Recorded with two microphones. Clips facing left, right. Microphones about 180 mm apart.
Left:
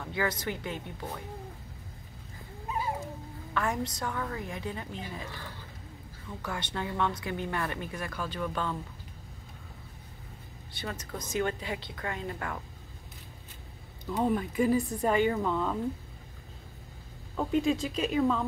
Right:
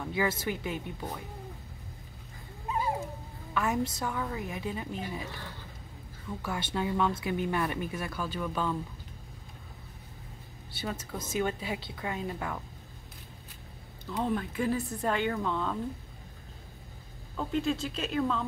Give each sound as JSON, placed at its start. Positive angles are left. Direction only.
{"t": 0.1, "sound": "a woman's voice", "side_deg": -10}
{"t": 3.5, "sound": "a woman's voice", "side_deg": -5}
{"t": 6.4, "sound": "a woman's voice", "side_deg": -5}
{"t": 10.7, "sound": "a woman's voice", "side_deg": -5}
{"t": 14.0, "sound": "speech", "side_deg": 10}
{"t": 17.4, "sound": "speech", "side_deg": 15}